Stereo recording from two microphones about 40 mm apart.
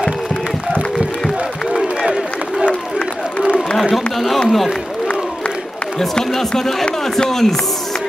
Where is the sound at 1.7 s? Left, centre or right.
Centre.